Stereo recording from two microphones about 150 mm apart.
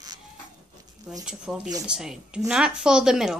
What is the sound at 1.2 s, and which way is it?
Speech, 5° right (ahead or behind).